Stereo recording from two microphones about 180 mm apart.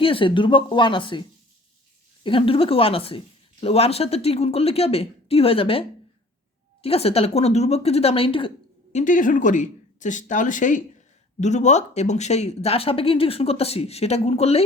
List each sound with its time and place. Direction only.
0.0 s speech: 30° left (ahead or behind)
2.2 s a woman's voice: 30° left (ahead or behind)
6.8 s a woman's voice: 35° left (ahead or behind)